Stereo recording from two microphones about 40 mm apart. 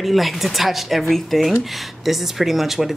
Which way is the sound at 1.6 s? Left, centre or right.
Centre.